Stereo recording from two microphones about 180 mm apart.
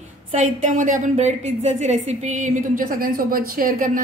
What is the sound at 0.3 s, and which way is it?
A woman's voice, 45° right (ahead or behind).